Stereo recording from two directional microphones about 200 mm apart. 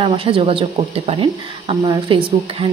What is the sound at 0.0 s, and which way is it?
A woman's voice, 25° right (ahead or behind).